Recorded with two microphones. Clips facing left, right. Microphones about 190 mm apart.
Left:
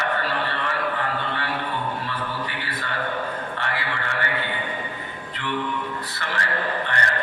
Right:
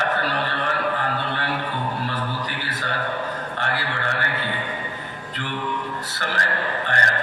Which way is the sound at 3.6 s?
40° right (ahead or behind).